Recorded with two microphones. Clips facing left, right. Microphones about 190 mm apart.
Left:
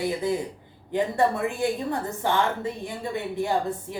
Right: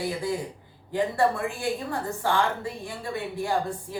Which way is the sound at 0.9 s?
20° left (ahead or behind).